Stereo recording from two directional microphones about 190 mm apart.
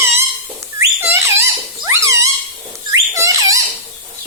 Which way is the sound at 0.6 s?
15° right (ahead or behind).